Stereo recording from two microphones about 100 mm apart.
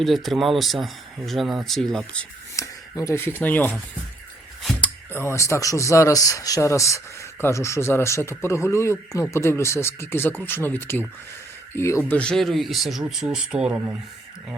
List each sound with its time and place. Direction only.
0.0 s speech: centre (ahead or behind)
2.6 s speech: 30° left (ahead or behind)
4.8 s speech: 25° left (ahead or behind)
12.1 s speech: 10° left (ahead or behind); by 13.7 s 10° right (ahead or behind)